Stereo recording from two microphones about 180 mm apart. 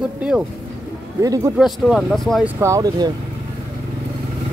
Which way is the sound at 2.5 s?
15° right (ahead or behind).